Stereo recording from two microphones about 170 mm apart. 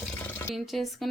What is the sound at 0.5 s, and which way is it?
Speech, centre (ahead or behind).